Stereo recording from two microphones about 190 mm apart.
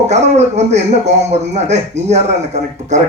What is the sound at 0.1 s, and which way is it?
A man's voice, 35° right (ahead or behind).